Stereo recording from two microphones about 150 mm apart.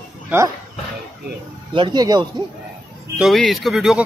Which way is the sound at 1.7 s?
30° right (ahead or behind).